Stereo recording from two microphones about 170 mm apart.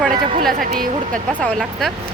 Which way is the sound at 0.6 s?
55° right (ahead or behind).